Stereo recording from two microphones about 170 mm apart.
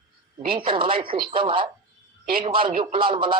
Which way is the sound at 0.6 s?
30° right (ahead or behind).